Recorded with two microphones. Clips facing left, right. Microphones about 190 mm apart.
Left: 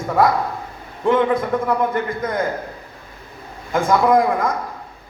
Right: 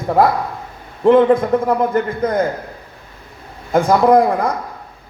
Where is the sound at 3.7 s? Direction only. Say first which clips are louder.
Right 4 dB; 35° right (ahead or behind).